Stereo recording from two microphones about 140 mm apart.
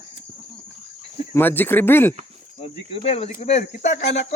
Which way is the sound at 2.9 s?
45° left (ahead or behind).